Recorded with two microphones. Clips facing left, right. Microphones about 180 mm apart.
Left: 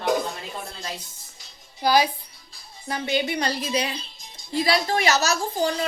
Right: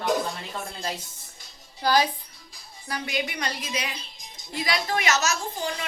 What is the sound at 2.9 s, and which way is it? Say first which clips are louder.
A woman's voice: left 5 dB; 30° left (ahead or behind).